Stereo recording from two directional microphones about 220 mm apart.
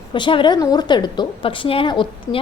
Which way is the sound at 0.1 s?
20° left (ahead or behind).